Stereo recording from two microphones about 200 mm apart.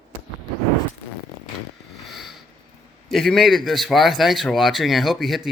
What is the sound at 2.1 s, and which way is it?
Sniff, centre (ahead or behind).